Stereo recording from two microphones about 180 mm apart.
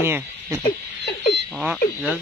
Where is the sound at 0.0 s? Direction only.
10° right (ahead or behind).